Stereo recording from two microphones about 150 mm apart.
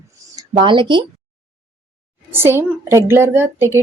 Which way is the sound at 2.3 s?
15° right (ahead or behind).